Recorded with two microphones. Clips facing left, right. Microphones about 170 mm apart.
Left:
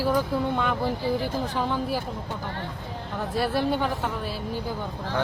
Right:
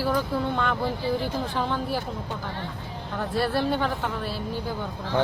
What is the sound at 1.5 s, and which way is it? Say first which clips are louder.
Speech: left 1 dB; 10° left (ahead or behind).